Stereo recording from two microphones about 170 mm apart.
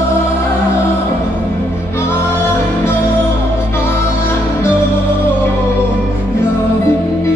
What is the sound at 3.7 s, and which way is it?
Music, 15° left (ahead or behind).